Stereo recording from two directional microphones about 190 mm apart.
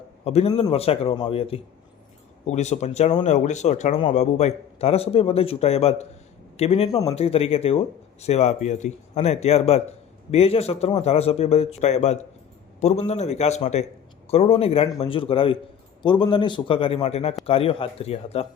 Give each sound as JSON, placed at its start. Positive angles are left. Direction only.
{"t": 0.3, "sound": "a man's voice", "side_deg": 35}